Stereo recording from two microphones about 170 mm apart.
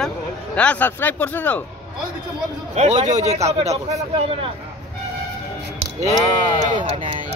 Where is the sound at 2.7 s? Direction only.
45° right (ahead or behind).